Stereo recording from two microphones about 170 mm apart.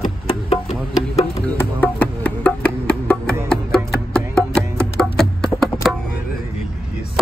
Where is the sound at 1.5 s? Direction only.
10° left (ahead or behind).